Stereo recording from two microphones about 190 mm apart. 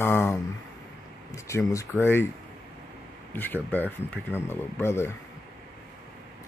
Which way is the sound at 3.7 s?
10° left (ahead or behind).